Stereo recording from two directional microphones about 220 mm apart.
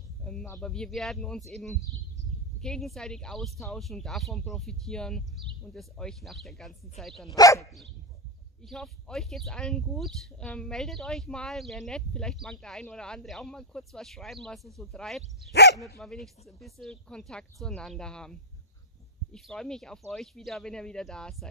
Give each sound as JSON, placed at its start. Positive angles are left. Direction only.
{"t": 0.2, "sound": "a sound", "side_deg": 5}
{"t": 0.5, "sound": "speech", "side_deg": 5}
{"t": 7.2, "sound": "speech", "side_deg": 15}
{"t": 8.6, "sound": "speech", "side_deg": 0}